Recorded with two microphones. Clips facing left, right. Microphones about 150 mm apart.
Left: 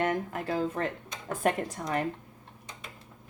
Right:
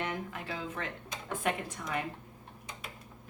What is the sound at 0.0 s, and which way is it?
A woman's voice, 50° left (ahead or behind).